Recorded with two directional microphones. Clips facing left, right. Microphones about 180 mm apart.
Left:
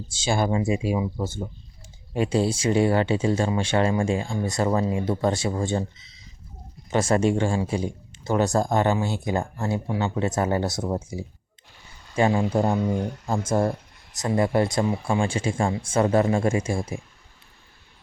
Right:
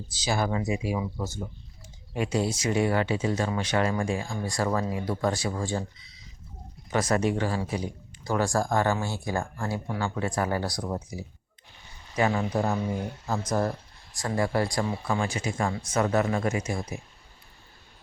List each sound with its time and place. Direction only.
0.1 s speech: 25° left (ahead or behind)